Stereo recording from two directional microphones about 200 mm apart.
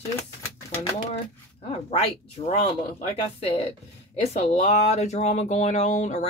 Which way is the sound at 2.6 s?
30° left (ahead or behind).